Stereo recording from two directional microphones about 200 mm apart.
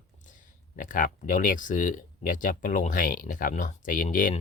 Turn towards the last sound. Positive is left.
turn(degrees=40)  # may be behind; listen again after turning